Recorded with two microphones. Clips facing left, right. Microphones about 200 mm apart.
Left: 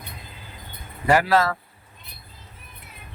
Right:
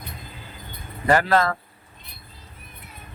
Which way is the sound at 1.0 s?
10° left (ahead or behind).